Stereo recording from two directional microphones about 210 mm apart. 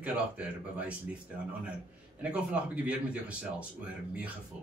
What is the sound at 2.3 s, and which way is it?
A man's voice, 5° right (ahead or behind).